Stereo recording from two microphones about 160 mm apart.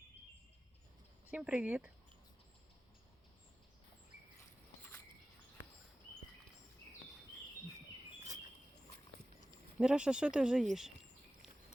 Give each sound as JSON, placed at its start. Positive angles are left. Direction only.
{"t": 1.3, "sound": "speech", "side_deg": -5}
{"t": 9.7, "sound": "speech", "side_deg": -5}